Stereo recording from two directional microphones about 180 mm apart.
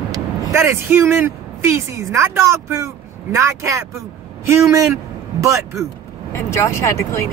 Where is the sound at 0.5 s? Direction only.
15° right (ahead or behind).